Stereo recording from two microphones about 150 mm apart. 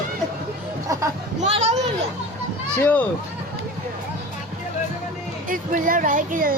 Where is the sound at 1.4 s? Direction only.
50° right (ahead or behind).